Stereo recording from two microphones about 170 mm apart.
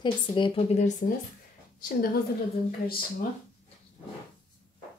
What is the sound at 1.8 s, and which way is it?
Speech, 55° left (ahead or behind).